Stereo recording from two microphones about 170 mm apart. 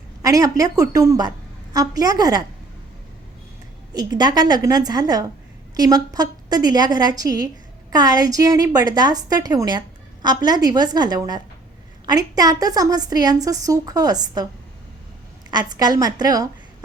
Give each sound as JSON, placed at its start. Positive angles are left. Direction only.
{"t": 0.2, "sound": "a woman's voice", "side_deg": -20}
{"t": 3.9, "sound": "a woman's voice", "side_deg": -25}
{"t": 15.4, "sound": "a woman's voice", "side_deg": -25}